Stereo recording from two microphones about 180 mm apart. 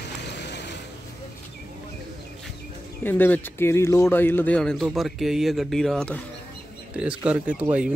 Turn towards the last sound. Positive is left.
turn(degrees=-10)  # may be behind; listen again after turning